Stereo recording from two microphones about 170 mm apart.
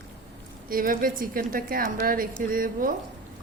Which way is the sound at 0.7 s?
55° right (ahead or behind).